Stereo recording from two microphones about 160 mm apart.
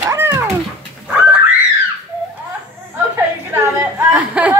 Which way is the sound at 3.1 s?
15° right (ahead or behind).